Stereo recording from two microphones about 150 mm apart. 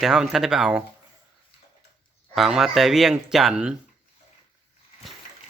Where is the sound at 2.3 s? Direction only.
Centre (ahead or behind).